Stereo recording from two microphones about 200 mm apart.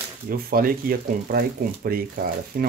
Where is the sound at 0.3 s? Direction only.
45° right (ahead or behind).